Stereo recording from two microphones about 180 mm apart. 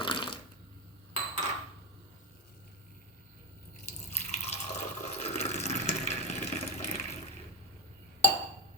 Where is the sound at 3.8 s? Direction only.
40° left (ahead or behind).